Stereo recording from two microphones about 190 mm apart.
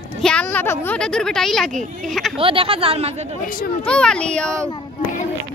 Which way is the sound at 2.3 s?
30° right (ahead or behind).